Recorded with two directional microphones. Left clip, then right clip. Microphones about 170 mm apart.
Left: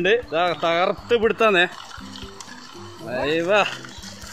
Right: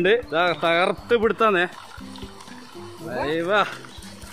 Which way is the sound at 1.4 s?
15° left (ahead or behind).